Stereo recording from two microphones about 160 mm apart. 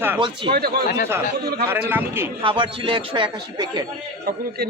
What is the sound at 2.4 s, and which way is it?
Speech, 35° right (ahead or behind).